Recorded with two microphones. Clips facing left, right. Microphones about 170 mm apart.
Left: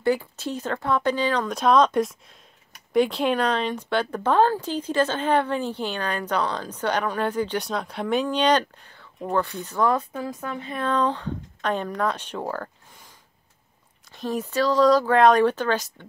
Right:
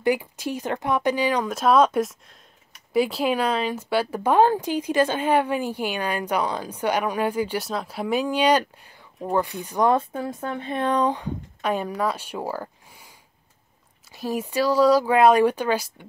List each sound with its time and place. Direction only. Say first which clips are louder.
0.0 s speech: even; 10° right (ahead or behind)